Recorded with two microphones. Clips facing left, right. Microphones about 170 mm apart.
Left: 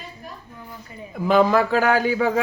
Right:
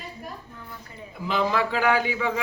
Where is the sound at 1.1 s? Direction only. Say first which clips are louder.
Left 8 dB; 50° left (ahead or behind).